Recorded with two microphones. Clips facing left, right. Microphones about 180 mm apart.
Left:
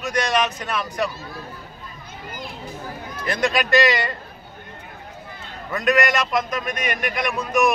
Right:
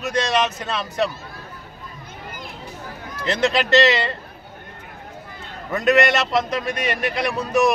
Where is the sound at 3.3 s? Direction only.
25° right (ahead or behind).